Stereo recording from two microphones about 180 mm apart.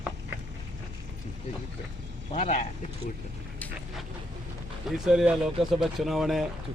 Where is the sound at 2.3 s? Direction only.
40° left (ahead or behind).